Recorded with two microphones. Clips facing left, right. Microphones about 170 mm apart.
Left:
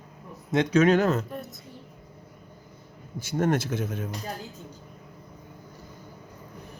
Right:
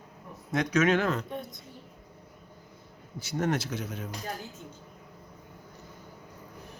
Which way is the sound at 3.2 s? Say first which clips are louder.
Left 4 dB; 50° left (ahead or behind).